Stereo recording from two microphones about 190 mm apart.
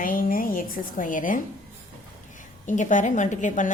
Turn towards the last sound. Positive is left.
turn(degrees=40)  # may be behind; listen again after turning